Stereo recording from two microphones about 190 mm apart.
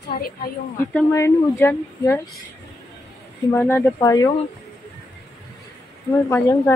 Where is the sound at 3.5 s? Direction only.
10° left (ahead or behind).